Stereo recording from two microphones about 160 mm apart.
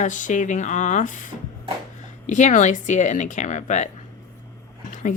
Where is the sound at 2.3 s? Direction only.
50° left (ahead or behind).